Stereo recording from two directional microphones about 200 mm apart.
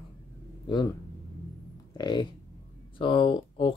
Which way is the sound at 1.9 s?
20° left (ahead or behind).